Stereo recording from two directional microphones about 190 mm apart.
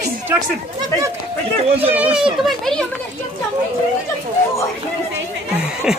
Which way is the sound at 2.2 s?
Centre (ahead or behind).